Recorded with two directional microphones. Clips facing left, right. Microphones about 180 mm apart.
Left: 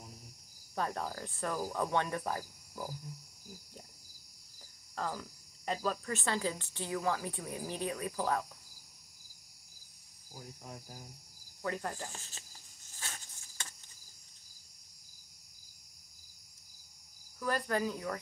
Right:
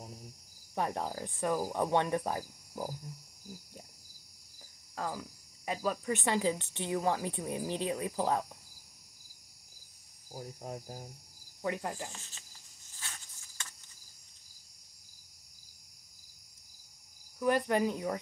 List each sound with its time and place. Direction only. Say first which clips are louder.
0.7 s speech: right 2 dB; 20° right (ahead or behind)
4.9 s speech: right 1 dB; 10° right (ahead or behind); by 8.5 s 25° right (ahead or behind)
10.3 s cricket: right 7 dB; 40° right (ahead or behind)
11.6 s cricket: right 2 dB; 15° right (ahead or behind)
17.4 s speech: right 5 dB; 20° right (ahead or behind)